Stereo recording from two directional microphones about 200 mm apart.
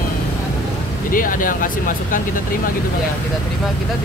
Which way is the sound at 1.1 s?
45° left (ahead or behind).